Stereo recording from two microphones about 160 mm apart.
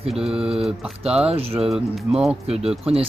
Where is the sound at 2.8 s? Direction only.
35° right (ahead or behind).